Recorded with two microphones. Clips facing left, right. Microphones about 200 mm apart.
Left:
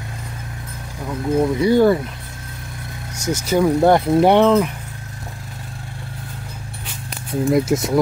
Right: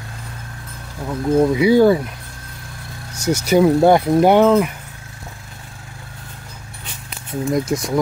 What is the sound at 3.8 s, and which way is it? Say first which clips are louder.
Speech: right 1 dB; centre (ahead or behind).